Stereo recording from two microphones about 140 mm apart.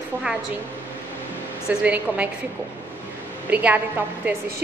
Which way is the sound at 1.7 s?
10° right (ahead or behind).